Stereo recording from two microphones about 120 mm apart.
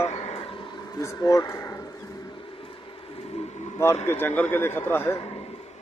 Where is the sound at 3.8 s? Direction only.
25° left (ahead or behind).